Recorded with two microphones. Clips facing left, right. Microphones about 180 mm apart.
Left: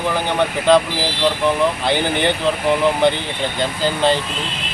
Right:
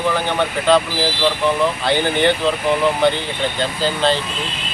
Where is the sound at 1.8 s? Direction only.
15° left (ahead or behind).